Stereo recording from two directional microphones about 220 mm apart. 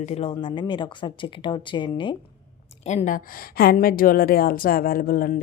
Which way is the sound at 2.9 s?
35° left (ahead or behind).